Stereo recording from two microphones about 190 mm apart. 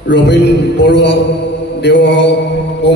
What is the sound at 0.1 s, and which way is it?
Music, 65° left (ahead or behind).